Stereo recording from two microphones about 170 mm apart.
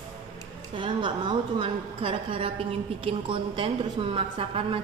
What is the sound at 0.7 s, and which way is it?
A woman's voice, 30° right (ahead or behind).